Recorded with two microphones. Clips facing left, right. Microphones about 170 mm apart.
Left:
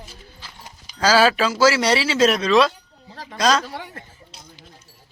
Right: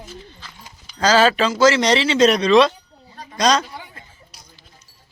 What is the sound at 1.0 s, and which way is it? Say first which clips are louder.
A woman's voice: right 1 dB; 10° left (ahead or behind).